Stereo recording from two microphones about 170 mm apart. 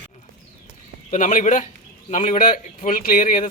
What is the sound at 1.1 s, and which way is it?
A man's voice, 50° left (ahead or behind).